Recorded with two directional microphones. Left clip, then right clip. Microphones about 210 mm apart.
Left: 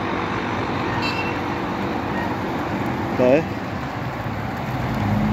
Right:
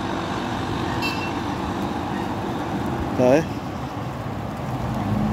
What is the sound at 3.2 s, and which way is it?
Speech, 15° right (ahead or behind).